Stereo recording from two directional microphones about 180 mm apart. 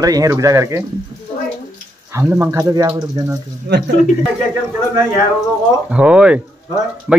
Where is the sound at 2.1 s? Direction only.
15° right (ahead or behind).